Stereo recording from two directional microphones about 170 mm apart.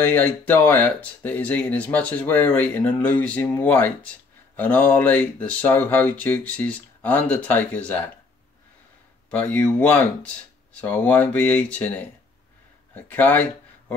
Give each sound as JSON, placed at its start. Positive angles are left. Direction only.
{"t": 0.0, "sound": "speech", "side_deg": 10}
{"t": 9.3, "sound": "speech", "side_deg": 10}